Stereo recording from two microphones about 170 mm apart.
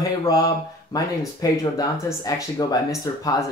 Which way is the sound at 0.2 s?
20° left (ahead or behind).